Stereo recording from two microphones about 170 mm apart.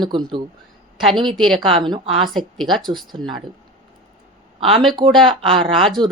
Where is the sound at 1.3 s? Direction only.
Centre (ahead or behind).